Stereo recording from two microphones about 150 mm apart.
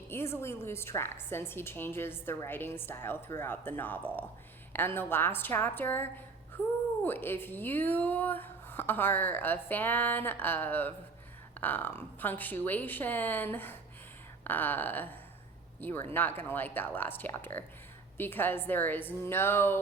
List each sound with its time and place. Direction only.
0.1 s a woman's voice: 15° left (ahead or behind)